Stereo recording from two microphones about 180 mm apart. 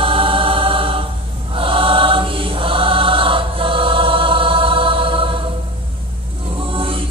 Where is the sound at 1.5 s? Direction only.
30° right (ahead or behind).